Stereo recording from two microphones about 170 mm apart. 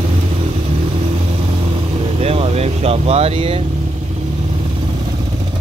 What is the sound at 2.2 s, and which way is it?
Vehicle, 35° right (ahead or behind).